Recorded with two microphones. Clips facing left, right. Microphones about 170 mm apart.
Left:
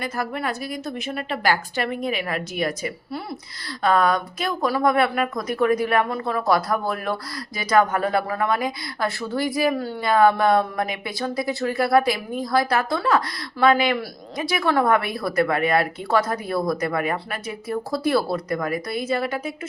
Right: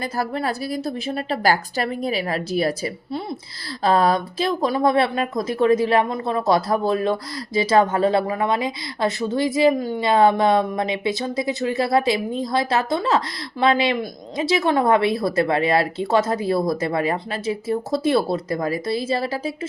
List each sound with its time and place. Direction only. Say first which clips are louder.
0.0 s a woman's voice: right 2 dB; 35° right (ahead or behind)